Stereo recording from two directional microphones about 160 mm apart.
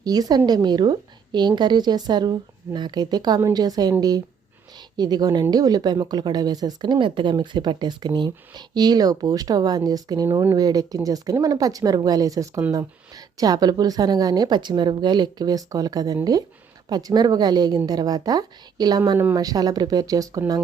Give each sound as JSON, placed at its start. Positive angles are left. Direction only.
{"t": 0.0, "sound": "speech", "side_deg": -25}
{"t": 4.9, "sound": "speech", "side_deg": -25}